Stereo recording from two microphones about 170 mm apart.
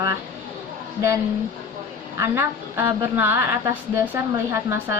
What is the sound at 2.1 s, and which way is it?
A woman's voice, 15° right (ahead or behind).